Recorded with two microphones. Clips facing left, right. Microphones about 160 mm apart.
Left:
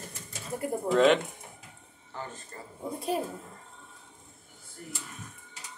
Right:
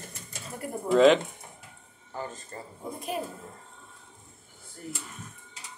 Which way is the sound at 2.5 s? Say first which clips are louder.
Right 3 dB; 30° right (ahead or behind).